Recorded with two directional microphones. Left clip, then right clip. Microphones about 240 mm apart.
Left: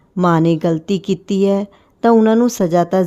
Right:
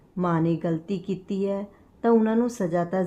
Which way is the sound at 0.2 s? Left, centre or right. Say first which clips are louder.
Left 11 dB; left.